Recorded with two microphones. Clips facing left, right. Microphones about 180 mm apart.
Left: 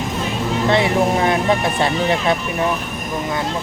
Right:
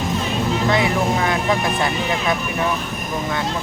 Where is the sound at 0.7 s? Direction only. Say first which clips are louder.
Left 5 dB; 25° left (ahead or behind).